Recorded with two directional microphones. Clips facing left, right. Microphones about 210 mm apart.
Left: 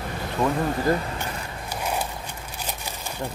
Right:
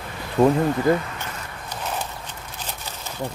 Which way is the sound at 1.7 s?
10° left (ahead or behind).